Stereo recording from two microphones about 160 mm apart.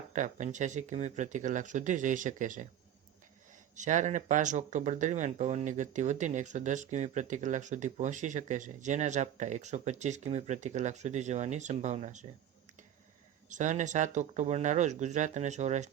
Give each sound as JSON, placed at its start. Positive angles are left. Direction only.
{"t": 0.1, "sound": "speech", "side_deg": -50}
{"t": 3.8, "sound": "speech", "side_deg": -50}
{"t": 13.5, "sound": "speech", "side_deg": -50}